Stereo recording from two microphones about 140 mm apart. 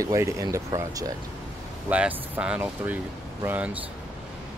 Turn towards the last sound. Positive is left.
turn(degrees=-15)  # may be behind; listen again after turning